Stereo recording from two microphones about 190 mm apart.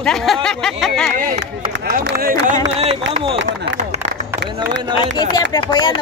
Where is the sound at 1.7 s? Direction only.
55° right (ahead or behind).